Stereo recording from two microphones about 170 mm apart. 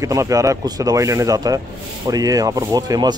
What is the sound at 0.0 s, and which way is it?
Speech, 20° right (ahead or behind).